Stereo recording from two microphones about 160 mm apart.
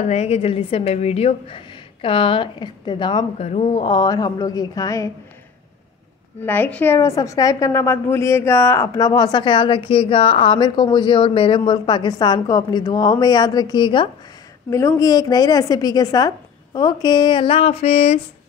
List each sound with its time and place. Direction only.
0.0 s a woman's voice: 45° left (ahead or behind); by 3.4 s 30° left (ahead or behind)
3.4 s speech: 40° left (ahead or behind)
3.8 s a woman's voice: 25° left (ahead or behind)
6.4 s a woman's voice: 10° left (ahead or behind); by 14.0 s 30° left (ahead or behind)
14.7 s a woman's voice: 20° left (ahead or behind); by 18.2 s 40° left (ahead or behind)